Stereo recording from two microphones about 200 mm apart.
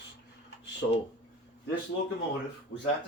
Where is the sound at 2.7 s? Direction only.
55° left (ahead or behind).